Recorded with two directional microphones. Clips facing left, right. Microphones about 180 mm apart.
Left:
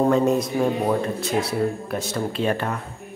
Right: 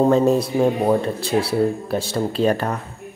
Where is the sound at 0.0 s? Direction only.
30° right (ahead or behind).